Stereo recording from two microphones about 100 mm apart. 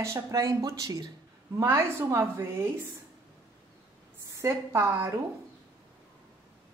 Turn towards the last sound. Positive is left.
turn(degrees=-25)  # may be behind; listen again after turning